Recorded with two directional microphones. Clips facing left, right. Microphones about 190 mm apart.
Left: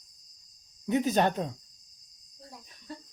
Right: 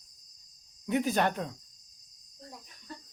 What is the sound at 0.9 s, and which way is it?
Speech, 20° left (ahead or behind).